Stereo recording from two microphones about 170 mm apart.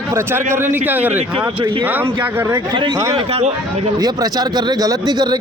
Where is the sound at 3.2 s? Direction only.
35° right (ahead or behind).